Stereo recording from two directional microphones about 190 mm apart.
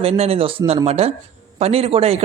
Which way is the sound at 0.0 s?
30° right (ahead or behind).